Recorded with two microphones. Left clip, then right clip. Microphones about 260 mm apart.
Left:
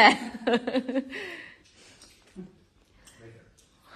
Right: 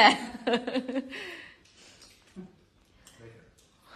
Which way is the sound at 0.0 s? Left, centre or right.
Centre.